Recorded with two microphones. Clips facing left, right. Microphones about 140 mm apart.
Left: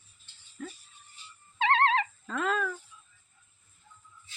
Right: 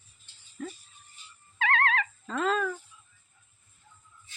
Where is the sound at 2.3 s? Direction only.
5° left (ahead or behind).